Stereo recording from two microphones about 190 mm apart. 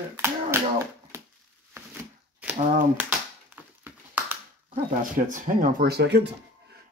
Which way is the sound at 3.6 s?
10° right (ahead or behind).